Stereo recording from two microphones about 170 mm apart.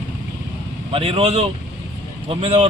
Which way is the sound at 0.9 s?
35° right (ahead or behind).